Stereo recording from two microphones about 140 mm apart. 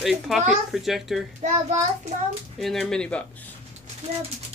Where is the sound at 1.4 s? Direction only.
65° right (ahead or behind).